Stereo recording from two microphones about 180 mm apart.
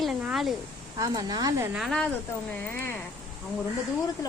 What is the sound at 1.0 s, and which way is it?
Speech, 20° right (ahead or behind).